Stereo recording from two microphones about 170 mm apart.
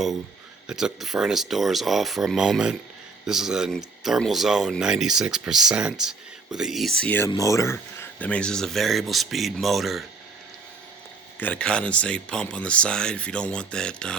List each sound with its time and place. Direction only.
0.7 s speech: 5° right (ahead or behind)
7.3 s speech: 20° left (ahead or behind)
8.2 s speech: 5° left (ahead or behind)
11.3 s speech: 10° left (ahead or behind)